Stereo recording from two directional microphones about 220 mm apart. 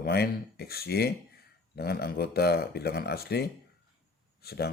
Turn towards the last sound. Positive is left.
turn(degrees=45)  # may be behind; listen again after turning